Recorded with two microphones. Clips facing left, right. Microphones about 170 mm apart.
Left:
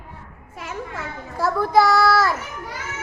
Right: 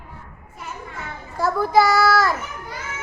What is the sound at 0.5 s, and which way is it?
Children playing, 90° left.